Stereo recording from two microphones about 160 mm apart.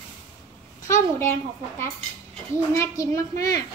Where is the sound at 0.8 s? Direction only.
15° left (ahead or behind).